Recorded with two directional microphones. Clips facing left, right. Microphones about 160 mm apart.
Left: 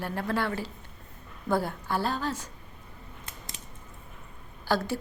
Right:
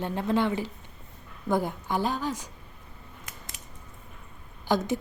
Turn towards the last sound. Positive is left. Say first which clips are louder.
# right 2 dB
turn(degrees=-20)  # may be behind; listen again after turning